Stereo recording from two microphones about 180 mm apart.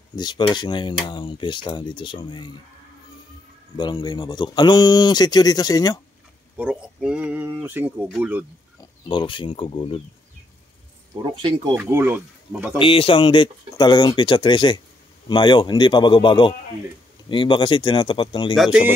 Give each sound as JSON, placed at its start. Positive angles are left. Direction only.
{"t": 0.1, "sound": "speech", "side_deg": 25}
{"t": 3.7, "sound": "speech", "side_deg": 25}
{"t": 6.5, "sound": "speech", "side_deg": -5}
{"t": 9.0, "sound": "speech", "side_deg": 25}
{"t": 11.3, "sound": "speech", "side_deg": -25}
{"t": 11.7, "sound": "speech", "side_deg": -10}
{"t": 12.7, "sound": "speech", "side_deg": 30}
{"t": 18.6, "sound": "speech", "side_deg": -5}